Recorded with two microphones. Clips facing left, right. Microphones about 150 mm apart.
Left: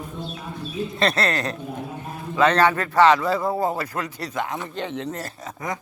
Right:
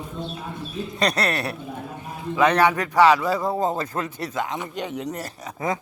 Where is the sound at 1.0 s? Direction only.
15° right (ahead or behind).